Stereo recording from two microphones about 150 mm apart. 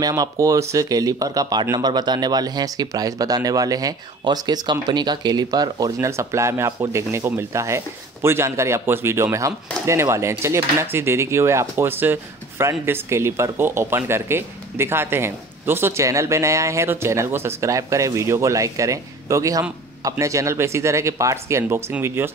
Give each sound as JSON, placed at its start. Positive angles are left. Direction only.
{"t": 0.0, "sound": "speech", "side_deg": -25}